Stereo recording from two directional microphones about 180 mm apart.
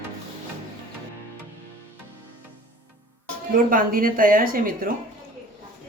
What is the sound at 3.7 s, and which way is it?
Speech, 50° right (ahead or behind).